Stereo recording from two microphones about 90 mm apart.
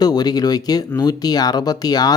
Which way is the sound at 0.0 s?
50° left (ahead or behind).